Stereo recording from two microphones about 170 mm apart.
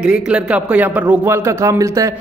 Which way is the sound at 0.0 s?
5° right (ahead or behind).